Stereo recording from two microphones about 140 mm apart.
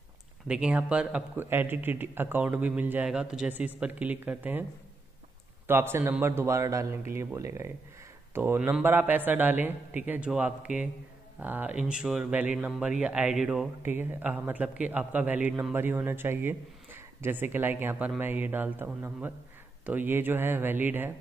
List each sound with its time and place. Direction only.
0.5 s speech: 10° right (ahead or behind)
5.7 s a man's voice: 15° right (ahead or behind)